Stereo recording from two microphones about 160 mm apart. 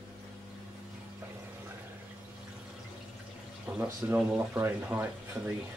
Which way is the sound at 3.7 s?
Centre (ahead or behind).